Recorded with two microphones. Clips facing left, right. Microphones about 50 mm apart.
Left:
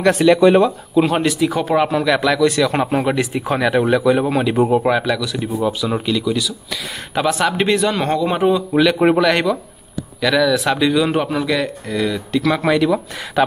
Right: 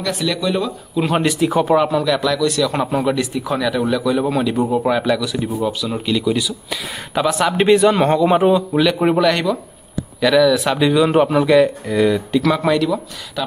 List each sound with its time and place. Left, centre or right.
0.2 s speech: left
0.9 s speech: centre
1.8 s a man's voice: centre
2.8 s speech: centre
3.1 s speech: left
4.0 s a man's voice: centre
4.6 s a man's voice: left
4.8 s speech: centre
5.4 s speech: centre
6.0 s speech: centre
7.2 s speech: centre
9.1 s speech: centre
12.4 s speech: centre